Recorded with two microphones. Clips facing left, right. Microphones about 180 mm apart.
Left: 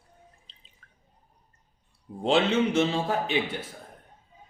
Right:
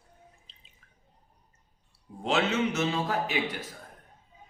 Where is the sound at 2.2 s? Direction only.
30° left (ahead or behind).